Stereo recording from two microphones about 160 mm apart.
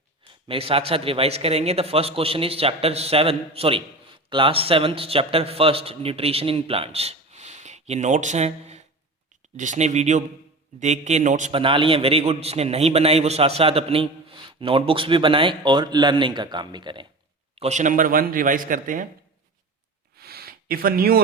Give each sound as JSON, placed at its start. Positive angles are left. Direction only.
{"t": 0.4, "sound": "a man's voice", "side_deg": -35}
{"t": 11.5, "sound": "a man's voice", "side_deg": -35}
{"t": 17.5, "sound": "speech", "side_deg": -40}
{"t": 20.1, "sound": "a sound", "side_deg": -75}